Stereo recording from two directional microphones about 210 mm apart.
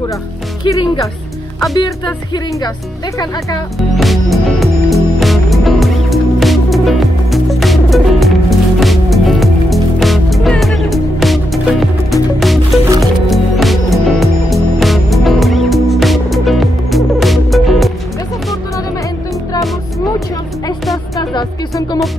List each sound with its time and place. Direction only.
0.7 s speech: 20° left (ahead or behind)
3.9 s music: centre (ahead or behind)
21.2 s music: 20° left (ahead or behind)